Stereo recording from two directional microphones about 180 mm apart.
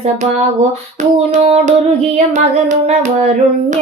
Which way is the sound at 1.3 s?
40° right (ahead or behind).